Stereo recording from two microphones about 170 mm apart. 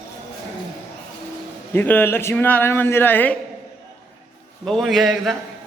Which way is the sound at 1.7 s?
10° left (ahead or behind).